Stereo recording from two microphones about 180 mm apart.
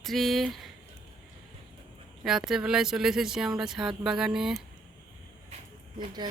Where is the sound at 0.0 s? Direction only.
Centre (ahead or behind).